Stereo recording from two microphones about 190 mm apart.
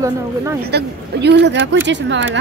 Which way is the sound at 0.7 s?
60° right (ahead or behind).